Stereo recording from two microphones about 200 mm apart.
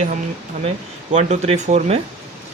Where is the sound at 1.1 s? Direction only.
35° right (ahead or behind).